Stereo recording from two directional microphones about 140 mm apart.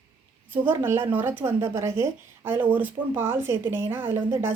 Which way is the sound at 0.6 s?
15° right (ahead or behind).